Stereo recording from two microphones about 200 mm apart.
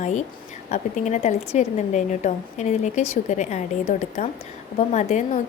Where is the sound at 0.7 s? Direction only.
35° left (ahead or behind).